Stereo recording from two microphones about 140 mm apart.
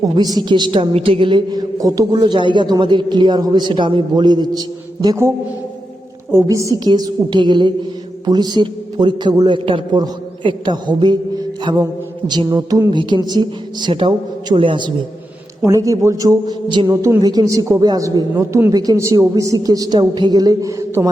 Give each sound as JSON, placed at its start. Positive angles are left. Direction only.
{"t": 0.0, "sound": "a woman's voice", "side_deg": -30}
{"t": 5.0, "sound": "a woman's voice", "side_deg": -20}
{"t": 6.3, "sound": "a woman's voice", "side_deg": -20}
{"t": 15.6, "sound": "a woman's voice", "side_deg": -25}
{"t": 16.8, "sound": "a woman's voice", "side_deg": -20}